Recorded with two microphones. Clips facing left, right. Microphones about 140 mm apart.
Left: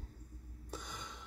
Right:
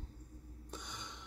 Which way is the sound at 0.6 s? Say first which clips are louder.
Left 2 dB; 5° left (ahead or behind).